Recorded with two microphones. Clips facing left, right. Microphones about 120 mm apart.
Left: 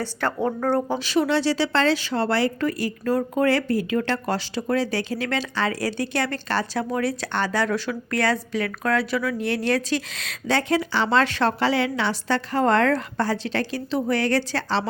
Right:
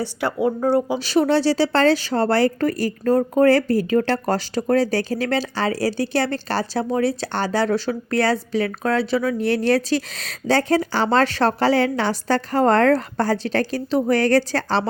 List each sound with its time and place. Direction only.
0.0 s a woman's voice: 10° right (ahead or behind)
0.9 s speech: 40° right (ahead or behind)